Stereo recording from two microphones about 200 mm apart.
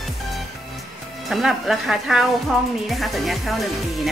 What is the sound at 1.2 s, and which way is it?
Speech, centre (ahead or behind).